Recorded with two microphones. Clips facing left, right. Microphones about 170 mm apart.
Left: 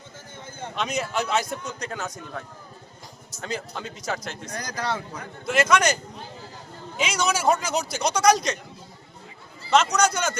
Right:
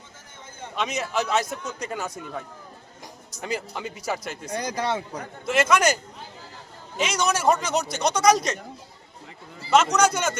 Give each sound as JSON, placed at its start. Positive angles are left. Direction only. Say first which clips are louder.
{"t": 0.8, "sound": "a man's voice", "louder": "right 1 dB", "side_deg": 0}
{"t": 3.4, "sound": "a man's voice", "louder": "right 2 dB", "side_deg": -10}
{"t": 4.4, "sound": "speech", "louder": "right 4 dB", "side_deg": -25}
{"t": 5.5, "sound": "a man's voice", "louder": "even", "side_deg": -5}
{"t": 9.6, "sound": "a man's voice", "louder": "right 1 dB", "side_deg": -5}